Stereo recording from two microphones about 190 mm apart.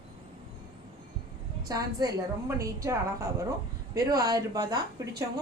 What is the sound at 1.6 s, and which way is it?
A woman's voice, 20° right (ahead or behind).